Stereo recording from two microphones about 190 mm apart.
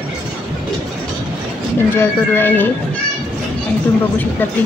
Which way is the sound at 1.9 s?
10° left (ahead or behind).